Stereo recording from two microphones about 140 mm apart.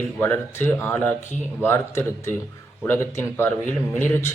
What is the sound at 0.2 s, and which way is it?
Speech, 15° left (ahead or behind).